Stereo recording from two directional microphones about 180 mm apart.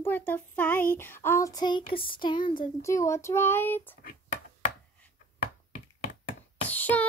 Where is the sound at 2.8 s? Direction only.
15° left (ahead or behind).